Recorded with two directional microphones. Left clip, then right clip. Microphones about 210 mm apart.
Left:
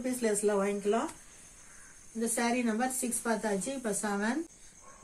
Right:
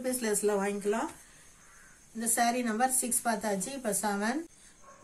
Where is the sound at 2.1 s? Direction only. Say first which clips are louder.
Right 2 dB; 55° right (ahead or behind).